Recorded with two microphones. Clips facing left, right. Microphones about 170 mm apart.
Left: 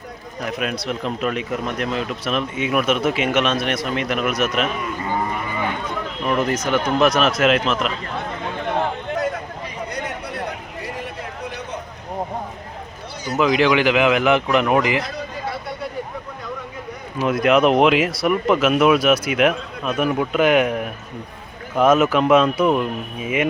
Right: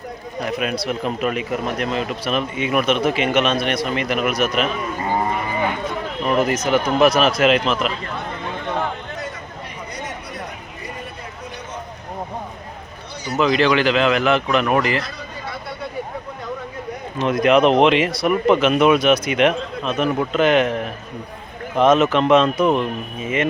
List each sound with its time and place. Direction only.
0.3 s speech: centre (ahead or behind)
6.2 s speech: 5° right (ahead or behind)
10.0 s a sound: 65° left (ahead or behind)
13.4 s speech: 15° left (ahead or behind)
17.2 s speech: 5° left (ahead or behind)